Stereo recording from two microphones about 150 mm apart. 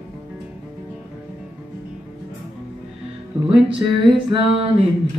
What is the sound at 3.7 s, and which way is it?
Music, 35° right (ahead or behind).